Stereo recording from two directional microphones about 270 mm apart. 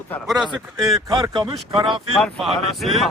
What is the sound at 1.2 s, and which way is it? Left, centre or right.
Speech, centre.